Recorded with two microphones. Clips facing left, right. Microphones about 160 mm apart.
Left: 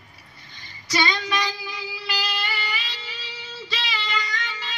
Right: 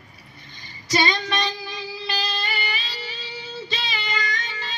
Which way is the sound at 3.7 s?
20° right (ahead or behind).